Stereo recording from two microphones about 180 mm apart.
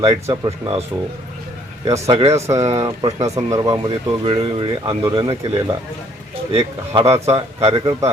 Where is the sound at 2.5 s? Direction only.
20° right (ahead or behind).